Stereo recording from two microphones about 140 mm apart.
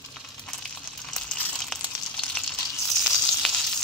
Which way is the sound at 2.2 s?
5° left (ahead or behind).